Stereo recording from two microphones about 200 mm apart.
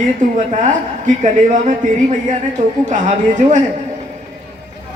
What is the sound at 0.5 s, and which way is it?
Speech, 35° right (ahead or behind).